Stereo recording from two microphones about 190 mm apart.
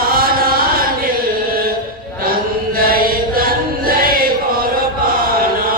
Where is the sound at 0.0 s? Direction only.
50° right (ahead or behind).